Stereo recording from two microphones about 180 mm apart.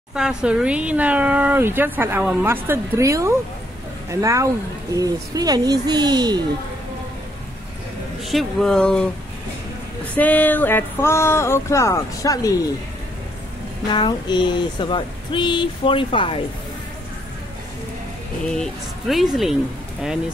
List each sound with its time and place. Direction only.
0.1 s speech: 5° right (ahead or behind); by 6.4 s 25° right (ahead or behind)
8.3 s speech: centre (ahead or behind)
10.1 s a sound: 10° left (ahead or behind)
13.8 s speech: 25° left (ahead or behind)
18.5 s speech: centre (ahead or behind)